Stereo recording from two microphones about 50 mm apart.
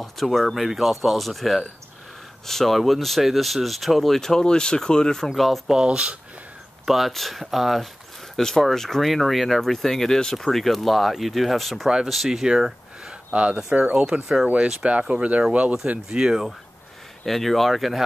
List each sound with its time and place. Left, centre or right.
0.0 s speech: centre
5.7 s speech: centre
6.9 s speech: centre
8.4 s speech: centre
13.1 s a sound: right
13.7 s speech: right
13.9 s speech: centre
17.2 s speech: centre